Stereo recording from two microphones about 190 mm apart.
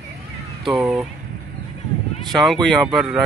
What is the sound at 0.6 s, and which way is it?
Speech, centre (ahead or behind).